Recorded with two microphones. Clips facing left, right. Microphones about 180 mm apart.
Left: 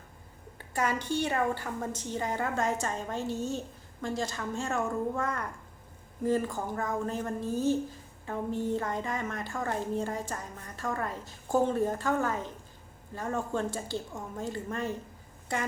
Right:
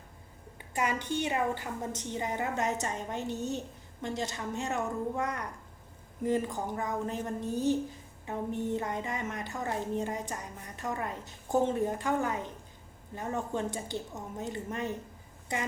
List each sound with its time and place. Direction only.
0.6 s a woman's voice: 20° right (ahead or behind)